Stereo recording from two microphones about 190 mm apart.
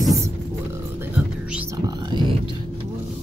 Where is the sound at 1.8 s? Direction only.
25° right (ahead or behind).